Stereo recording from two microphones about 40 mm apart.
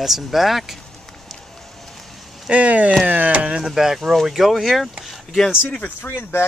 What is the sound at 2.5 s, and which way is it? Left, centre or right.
Speech, right.